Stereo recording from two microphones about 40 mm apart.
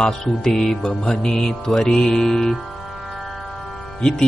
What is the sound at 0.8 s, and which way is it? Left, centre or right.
Mantra, left.